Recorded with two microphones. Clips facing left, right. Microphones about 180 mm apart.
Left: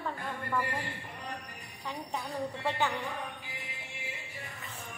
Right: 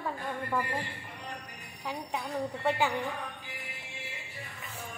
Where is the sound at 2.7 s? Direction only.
10° right (ahead or behind).